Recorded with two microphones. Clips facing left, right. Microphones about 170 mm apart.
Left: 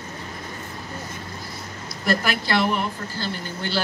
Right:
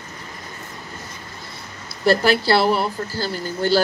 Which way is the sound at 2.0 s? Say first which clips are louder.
Right 7 dB; 30° right (ahead or behind).